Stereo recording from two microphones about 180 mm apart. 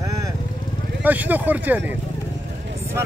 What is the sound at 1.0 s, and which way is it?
Speech, 10° right (ahead or behind).